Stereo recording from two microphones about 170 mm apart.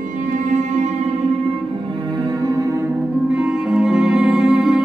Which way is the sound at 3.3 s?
5° right (ahead or behind).